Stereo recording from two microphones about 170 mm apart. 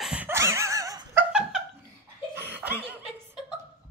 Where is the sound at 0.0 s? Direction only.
10° right (ahead or behind).